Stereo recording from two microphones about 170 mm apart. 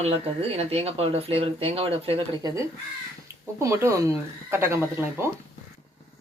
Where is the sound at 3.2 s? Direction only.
15° right (ahead or behind).